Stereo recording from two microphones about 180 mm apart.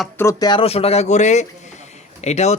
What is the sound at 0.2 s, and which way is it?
Speech, 20° left (ahead or behind).